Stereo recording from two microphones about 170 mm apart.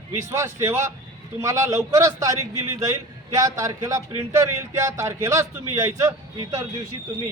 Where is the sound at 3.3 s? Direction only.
20° right (ahead or behind).